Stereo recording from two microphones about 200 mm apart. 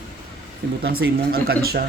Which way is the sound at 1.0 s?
65° right (ahead or behind).